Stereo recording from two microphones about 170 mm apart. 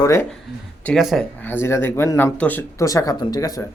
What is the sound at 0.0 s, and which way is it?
Speech, 15° left (ahead or behind).